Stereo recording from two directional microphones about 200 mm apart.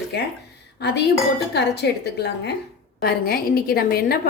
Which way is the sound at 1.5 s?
55° left (ahead or behind).